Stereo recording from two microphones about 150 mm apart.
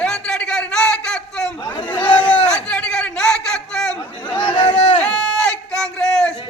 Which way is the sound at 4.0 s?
30° left (ahead or behind).